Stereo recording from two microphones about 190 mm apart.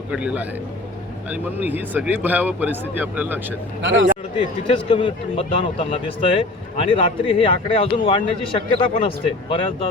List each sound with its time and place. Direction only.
0.1 s speech: 5° right (ahead or behind)
3.8 s speech: 75° right (ahead or behind)
4.9 s speech: 30° left (ahead or behind)